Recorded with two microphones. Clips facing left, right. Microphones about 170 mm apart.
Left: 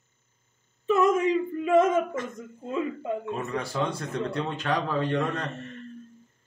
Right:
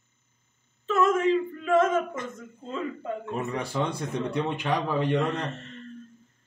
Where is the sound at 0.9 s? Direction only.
15° left (ahead or behind).